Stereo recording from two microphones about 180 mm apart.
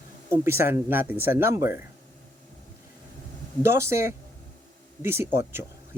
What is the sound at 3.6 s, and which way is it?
Speech, 15° right (ahead or behind).